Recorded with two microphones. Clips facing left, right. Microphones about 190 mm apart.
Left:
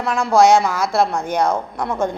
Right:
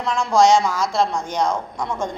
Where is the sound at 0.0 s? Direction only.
60° left (ahead or behind).